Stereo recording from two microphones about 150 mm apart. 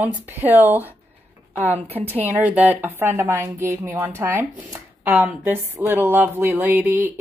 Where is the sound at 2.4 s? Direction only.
10° right (ahead or behind).